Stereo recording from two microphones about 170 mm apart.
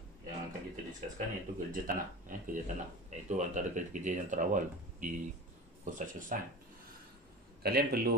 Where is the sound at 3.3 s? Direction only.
50° right (ahead or behind).